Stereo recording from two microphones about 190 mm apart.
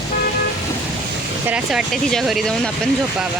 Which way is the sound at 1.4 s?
5° right (ahead or behind).